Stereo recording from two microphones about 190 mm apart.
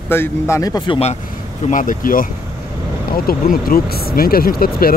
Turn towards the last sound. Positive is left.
turn(degrees=50)  # may be behind; listen again after turning